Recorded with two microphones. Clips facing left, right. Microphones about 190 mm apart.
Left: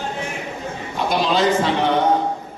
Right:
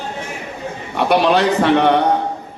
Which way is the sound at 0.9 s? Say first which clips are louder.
Right 5 dB; 65° right (ahead or behind).